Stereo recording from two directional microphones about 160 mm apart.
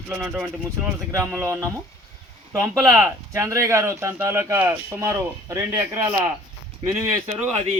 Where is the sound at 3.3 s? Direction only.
20° right (ahead or behind).